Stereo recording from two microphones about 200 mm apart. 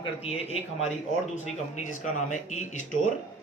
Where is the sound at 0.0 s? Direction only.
30° left (ahead or behind).